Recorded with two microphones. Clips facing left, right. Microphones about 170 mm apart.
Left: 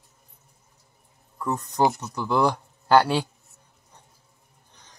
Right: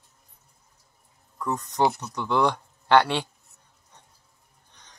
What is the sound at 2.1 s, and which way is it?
Speech, 5° left (ahead or behind).